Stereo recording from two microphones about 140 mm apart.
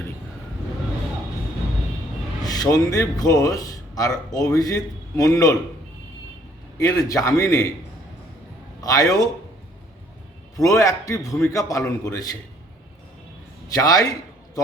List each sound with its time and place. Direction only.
2.4 s speech: 25° left (ahead or behind)
6.8 s a man's voice: 25° left (ahead or behind)
8.8 s a man's voice: 25° left (ahead or behind)
10.6 s a man's voice: 25° left (ahead or behind)
13.7 s a man's voice: 25° left (ahead or behind)